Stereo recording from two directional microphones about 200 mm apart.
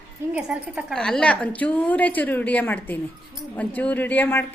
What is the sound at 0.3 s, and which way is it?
Speech, 5° right (ahead or behind).